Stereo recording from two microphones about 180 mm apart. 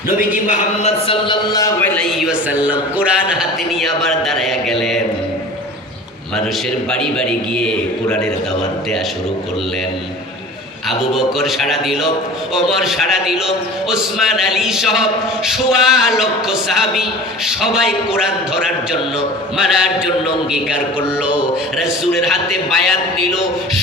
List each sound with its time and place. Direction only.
0.4 s a sound: 40° left (ahead or behind)
1.5 s a man's voice: 20° left (ahead or behind)
2.0 s a man's voice: centre (ahead or behind)
6.9 s a man's voice: 5° left (ahead or behind)
10.8 s a man's voice: centre (ahead or behind)
21.8 s a man's voice: centre (ahead or behind)